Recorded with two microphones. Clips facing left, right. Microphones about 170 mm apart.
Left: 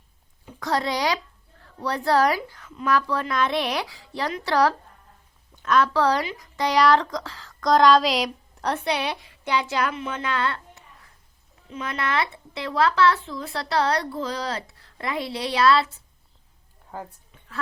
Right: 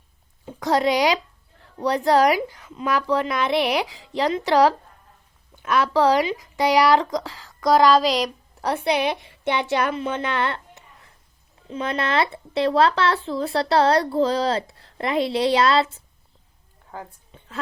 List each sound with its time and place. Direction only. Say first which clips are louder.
0.6 s speech: right 5 dB; 15° right (ahead or behind)
9.2 s speech: right 2 dB; 25° right (ahead or behind)
17.3 s a sound: right 7 dB; 30° right (ahead or behind)